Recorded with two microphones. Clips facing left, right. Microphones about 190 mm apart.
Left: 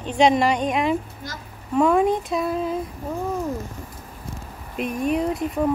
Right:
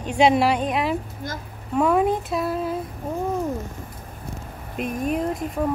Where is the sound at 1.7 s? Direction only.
5° right (ahead or behind).